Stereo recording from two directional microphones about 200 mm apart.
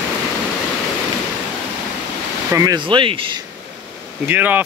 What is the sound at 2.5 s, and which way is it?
Speech, 15° right (ahead or behind).